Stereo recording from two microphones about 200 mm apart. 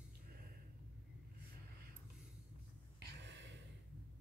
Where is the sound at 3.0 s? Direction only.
60° right (ahead or behind).